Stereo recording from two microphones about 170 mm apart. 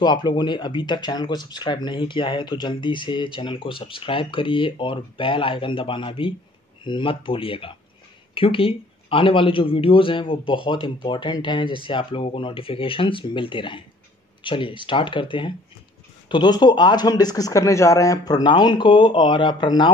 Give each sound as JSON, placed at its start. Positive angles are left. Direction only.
{"t": 0.0, "sound": "speech", "side_deg": 25}